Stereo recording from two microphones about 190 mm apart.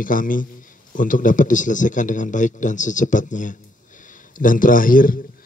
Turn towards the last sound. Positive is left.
turn(degrees=45)  # may be behind; listen again after turning